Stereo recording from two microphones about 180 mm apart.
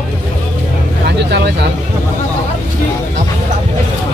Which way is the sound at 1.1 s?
65° right (ahead or behind).